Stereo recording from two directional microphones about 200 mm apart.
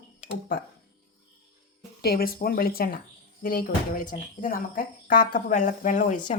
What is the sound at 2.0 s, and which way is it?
Speech, 50° left (ahead or behind).